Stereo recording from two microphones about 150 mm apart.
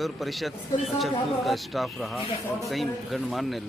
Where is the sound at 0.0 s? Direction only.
Centre (ahead or behind).